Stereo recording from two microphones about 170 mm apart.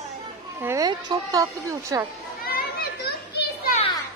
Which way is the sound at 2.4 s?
65° left (ahead or behind).